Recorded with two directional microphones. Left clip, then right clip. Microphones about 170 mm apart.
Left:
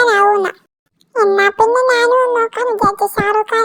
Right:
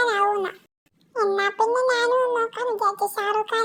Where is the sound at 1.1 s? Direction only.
55° left (ahead or behind).